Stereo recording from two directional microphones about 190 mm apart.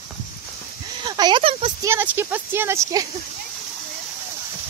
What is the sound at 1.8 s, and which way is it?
Speech, 10° right (ahead or behind).